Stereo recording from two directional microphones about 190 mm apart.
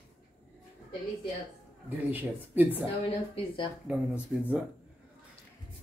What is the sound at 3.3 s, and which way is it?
Speech, 25° left (ahead or behind).